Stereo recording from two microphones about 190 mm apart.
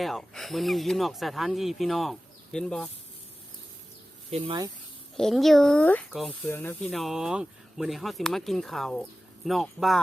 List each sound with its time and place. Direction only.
0.0 s speech: centre (ahead or behind)
4.3 s speech: 25° right (ahead or behind)
5.1 s speech: centre (ahead or behind)
6.5 s speech: 10° left (ahead or behind)
6.8 s speech: centre (ahead or behind)